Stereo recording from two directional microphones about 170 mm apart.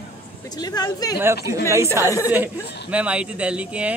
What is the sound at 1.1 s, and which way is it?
Speech, 15° right (ahead or behind).